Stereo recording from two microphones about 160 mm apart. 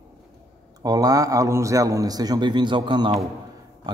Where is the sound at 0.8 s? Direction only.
25° right (ahead or behind).